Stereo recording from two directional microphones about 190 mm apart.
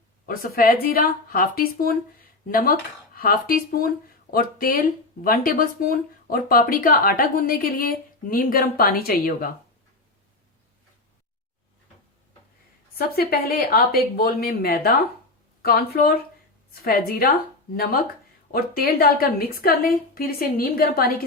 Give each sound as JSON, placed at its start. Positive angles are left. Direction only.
{"t": 0.3, "sound": "speech", "side_deg": 50}
{"t": 13.0, "sound": "speech", "side_deg": 55}
{"t": 18.5, "sound": "speech", "side_deg": 50}